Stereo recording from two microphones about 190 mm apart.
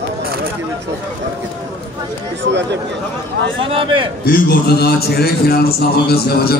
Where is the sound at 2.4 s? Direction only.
65° right (ahead or behind).